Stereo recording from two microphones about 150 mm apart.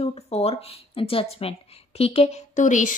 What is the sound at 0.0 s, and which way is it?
Speech, 40° left (ahead or behind).